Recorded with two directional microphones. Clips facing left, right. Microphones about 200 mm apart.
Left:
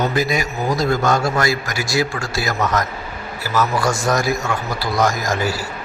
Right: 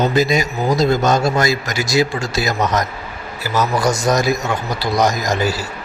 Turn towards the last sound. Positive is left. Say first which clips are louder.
# right 2 dB
turn(degrees=-20)  # may be behind; listen again after turning